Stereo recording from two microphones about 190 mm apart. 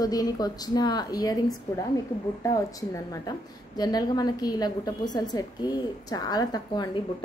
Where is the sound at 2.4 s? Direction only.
15° left (ahead or behind).